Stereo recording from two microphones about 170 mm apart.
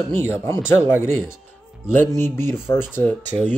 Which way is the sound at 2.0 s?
15° left (ahead or behind).